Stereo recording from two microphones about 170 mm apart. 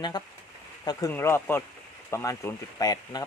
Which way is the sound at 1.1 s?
15° left (ahead or behind).